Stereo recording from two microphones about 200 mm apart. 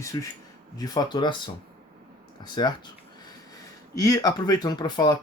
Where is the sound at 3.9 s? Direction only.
15° left (ahead or behind).